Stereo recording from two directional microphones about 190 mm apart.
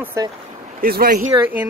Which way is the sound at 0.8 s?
50° right (ahead or behind).